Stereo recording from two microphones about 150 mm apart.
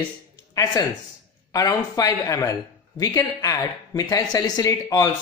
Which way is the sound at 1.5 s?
25° left (ahead or behind).